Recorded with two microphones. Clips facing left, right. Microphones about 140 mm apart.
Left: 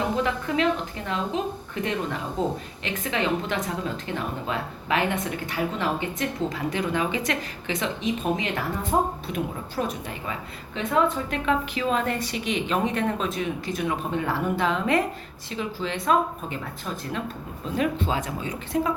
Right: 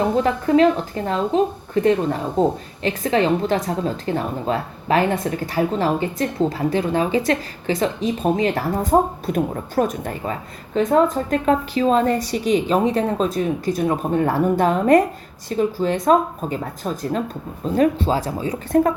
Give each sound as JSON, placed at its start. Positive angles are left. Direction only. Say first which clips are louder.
{"t": 0.2, "sound": "a woman's voice", "louder": "right 9 dB", "side_deg": -35}
{"t": 18.7, "sound": "a woman's voice", "louder": "right 9 dB", "side_deg": -50}